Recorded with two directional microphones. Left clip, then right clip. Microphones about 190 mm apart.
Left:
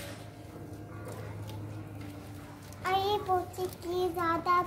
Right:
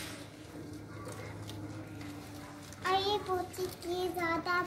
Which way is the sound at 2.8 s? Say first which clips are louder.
Left 2 dB; 50° left (ahead or behind).